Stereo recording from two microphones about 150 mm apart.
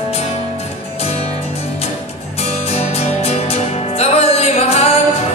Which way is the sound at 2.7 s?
45° left (ahead or behind).